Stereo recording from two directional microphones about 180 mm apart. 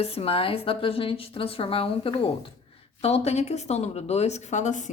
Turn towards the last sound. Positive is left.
turn(degrees=40)  # may be behind; listen again after turning